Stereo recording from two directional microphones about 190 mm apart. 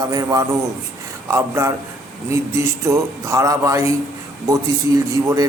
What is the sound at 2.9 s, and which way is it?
Speech, 15° right (ahead or behind).